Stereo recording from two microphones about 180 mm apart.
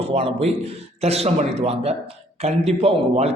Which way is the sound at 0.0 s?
35° right (ahead or behind).